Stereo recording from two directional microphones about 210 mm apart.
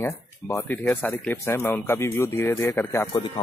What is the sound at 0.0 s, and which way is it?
Speech, 10° left (ahead or behind).